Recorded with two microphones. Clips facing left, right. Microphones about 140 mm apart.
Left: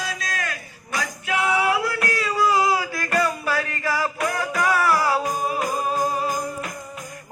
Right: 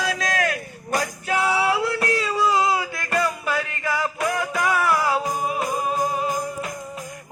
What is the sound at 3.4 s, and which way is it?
Music, 20° right (ahead or behind).